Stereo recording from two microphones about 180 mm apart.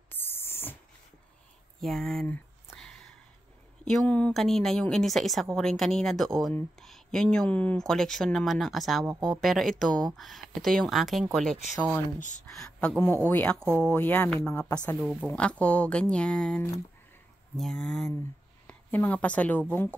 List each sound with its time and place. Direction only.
0.1 s a sound: 10° left (ahead or behind)
1.8 s a sound: centre (ahead or behind)
3.8 s a woman's voice: 5° left (ahead or behind)
12.2 s speech: 45° left (ahead or behind)
12.4 s a woman's voice: 5° left (ahead or behind)
13.6 s speech: 15° right (ahead or behind)
13.8 s a woman's voice: 10° left (ahead or behind)